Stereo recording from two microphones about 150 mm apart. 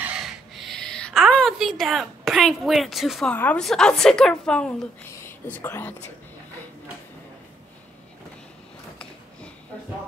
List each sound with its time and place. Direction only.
0.0 s a sound: 5° right (ahead or behind)
3.3 s a woman's voice: 5° left (ahead or behind)
5.1 s speech: 15° left (ahead or behind)